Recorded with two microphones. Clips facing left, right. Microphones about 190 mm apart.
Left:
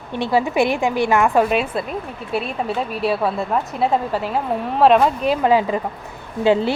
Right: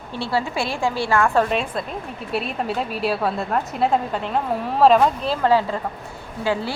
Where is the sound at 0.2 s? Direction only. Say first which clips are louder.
Left 6 dB; 20° left (ahead or behind).